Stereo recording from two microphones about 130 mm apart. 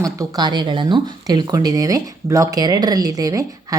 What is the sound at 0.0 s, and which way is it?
Speech, 30° right (ahead or behind).